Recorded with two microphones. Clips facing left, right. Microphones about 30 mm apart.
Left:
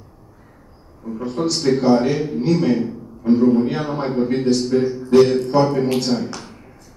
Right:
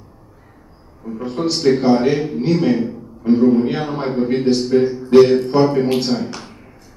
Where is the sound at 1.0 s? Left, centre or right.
Centre.